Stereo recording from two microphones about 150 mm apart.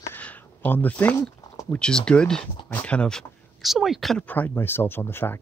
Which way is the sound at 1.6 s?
10° left (ahead or behind).